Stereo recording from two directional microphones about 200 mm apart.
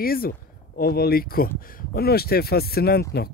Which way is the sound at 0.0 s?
50° left (ahead or behind).